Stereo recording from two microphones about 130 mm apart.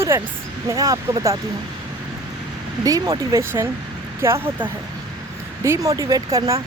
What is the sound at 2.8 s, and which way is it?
Speech, 30° right (ahead or behind).